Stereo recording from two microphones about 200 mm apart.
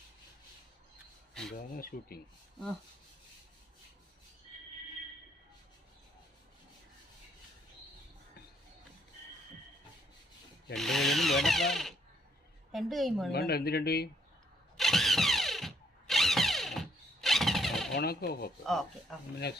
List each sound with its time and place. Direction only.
1.3 s a sound: centre (ahead or behind)
1.5 s speech: 45° left (ahead or behind)
10.8 s a woman's voice: centre (ahead or behind)
13.3 s speech: 50° left (ahead or behind)
14.8 s a sound: centre (ahead or behind)
17.9 s speech: 50° left (ahead or behind)
18.6 s a woman's voice: centre (ahead or behind)
19.4 s speech: 55° left (ahead or behind)